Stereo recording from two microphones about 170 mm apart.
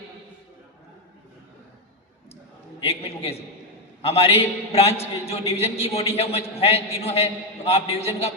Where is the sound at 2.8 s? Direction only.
35° left (ahead or behind).